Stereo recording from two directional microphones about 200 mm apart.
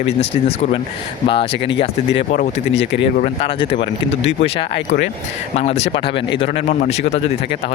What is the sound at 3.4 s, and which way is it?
Speech, 25° left (ahead or behind).